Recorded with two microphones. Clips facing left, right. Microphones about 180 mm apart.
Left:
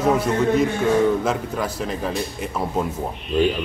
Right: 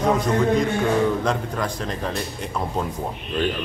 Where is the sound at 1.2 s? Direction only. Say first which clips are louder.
Left 1 dB; 5° left (ahead or behind).